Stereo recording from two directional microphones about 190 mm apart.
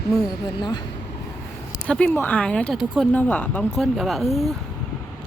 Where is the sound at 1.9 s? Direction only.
10° left (ahead or behind).